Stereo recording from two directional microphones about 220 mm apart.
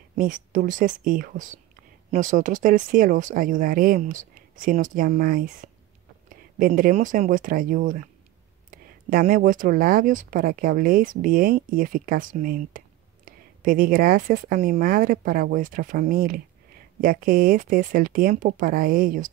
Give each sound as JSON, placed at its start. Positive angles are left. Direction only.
{"t": 0.1, "sound": "speech", "side_deg": -35}